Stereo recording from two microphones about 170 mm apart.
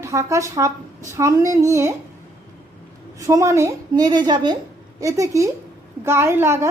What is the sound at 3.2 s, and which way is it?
A child's voice, 15° right (ahead or behind).